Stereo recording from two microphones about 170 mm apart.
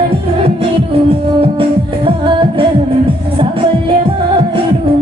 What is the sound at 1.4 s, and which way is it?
Music, 30° right (ahead or behind).